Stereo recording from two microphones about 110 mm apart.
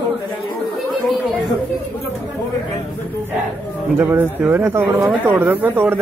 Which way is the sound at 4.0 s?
15° right (ahead or behind).